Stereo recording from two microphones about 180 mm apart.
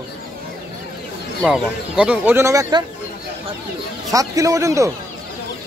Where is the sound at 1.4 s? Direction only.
5° right (ahead or behind).